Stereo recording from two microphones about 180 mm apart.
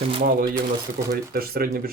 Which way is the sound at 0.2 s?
55° right (ahead or behind).